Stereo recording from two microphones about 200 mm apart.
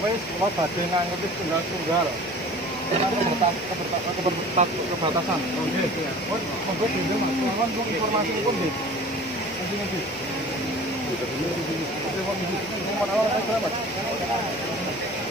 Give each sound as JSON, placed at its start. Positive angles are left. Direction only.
{"t": 4.6, "sound": "speech", "side_deg": -35}